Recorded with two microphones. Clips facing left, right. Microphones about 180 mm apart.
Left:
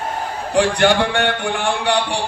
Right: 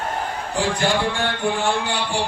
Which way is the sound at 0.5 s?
70° left (ahead or behind).